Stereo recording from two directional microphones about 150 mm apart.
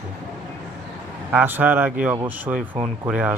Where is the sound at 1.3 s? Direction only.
10° right (ahead or behind).